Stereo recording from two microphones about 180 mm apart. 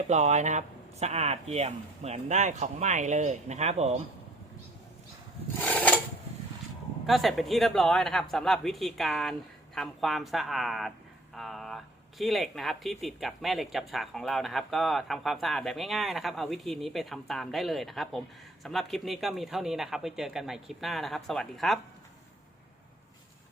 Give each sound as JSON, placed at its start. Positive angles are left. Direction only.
{"t": 0.1, "sound": "speech", "side_deg": -40}
{"t": 5.5, "sound": "a sound", "side_deg": 10}
{"t": 7.1, "sound": "speech", "side_deg": 0}